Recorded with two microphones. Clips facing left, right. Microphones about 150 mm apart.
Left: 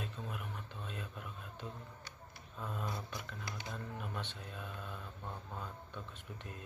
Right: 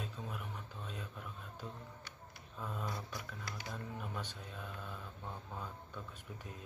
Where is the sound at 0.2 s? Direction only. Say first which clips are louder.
Left 1 dB; centre (ahead or behind).